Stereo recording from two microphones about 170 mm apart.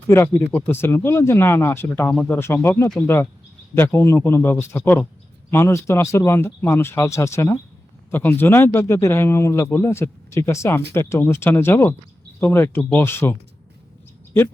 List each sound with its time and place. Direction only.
0.1 s speech: 15° left (ahead or behind)